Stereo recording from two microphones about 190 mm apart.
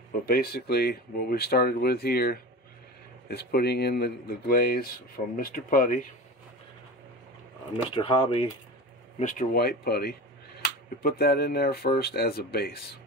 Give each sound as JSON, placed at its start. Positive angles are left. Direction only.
{"t": 0.2, "sound": "speech", "side_deg": 55}
{"t": 7.7, "sound": "speech", "side_deg": 25}
{"t": 9.2, "sound": "speech", "side_deg": 40}